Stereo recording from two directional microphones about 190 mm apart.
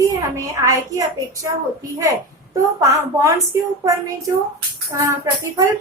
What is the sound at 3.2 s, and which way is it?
A woman's voice, 15° right (ahead or behind).